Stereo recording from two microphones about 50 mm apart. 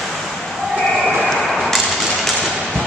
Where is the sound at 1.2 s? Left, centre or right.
Centre.